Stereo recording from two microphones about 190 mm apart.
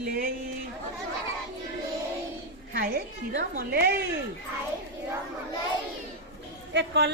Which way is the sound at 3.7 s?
55° right (ahead or behind).